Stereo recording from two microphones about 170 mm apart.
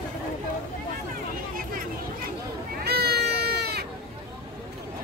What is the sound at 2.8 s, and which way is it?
Goat, 70° right (ahead or behind).